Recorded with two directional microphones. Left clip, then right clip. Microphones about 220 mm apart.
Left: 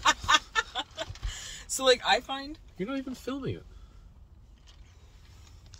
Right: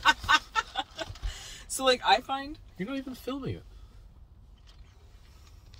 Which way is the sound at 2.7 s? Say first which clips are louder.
Left 2 dB; 10° right (ahead or behind).